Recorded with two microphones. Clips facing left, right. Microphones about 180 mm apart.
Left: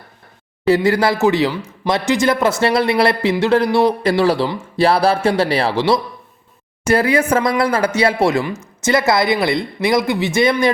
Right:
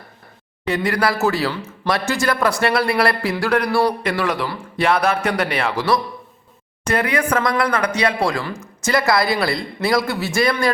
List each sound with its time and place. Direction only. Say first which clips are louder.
0.6 s a man's voice: left 6 dB; 25° left (ahead or behind)